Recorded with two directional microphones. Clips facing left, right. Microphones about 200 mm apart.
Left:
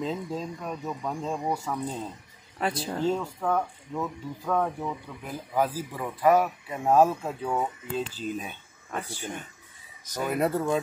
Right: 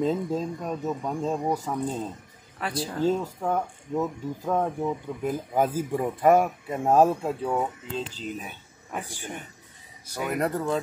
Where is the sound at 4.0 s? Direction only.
25° right (ahead or behind).